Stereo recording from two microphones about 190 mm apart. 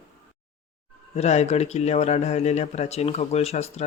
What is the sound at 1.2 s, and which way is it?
Speech, 35° left (ahead or behind).